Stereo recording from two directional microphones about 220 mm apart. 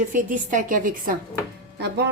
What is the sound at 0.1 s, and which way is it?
A woman's voice, 35° right (ahead or behind).